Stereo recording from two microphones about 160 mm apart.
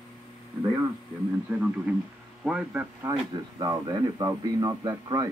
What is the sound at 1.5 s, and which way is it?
A man's voice, 10° right (ahead or behind).